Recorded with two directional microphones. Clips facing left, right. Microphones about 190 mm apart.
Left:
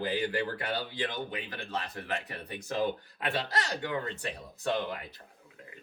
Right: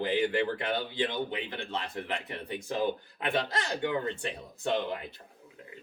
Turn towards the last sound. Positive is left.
turn(degrees=-25)  # may be behind; listen again after turning